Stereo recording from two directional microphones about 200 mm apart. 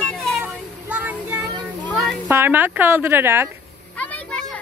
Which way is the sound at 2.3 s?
10° right (ahead or behind).